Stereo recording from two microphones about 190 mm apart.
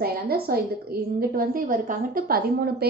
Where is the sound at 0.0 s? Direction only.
55° right (ahead or behind).